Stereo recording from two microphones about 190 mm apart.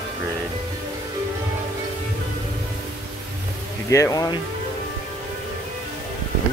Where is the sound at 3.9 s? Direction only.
15° left (ahead or behind).